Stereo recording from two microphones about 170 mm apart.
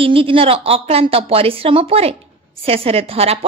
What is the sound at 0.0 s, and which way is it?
A woman's voice, 30° right (ahead or behind).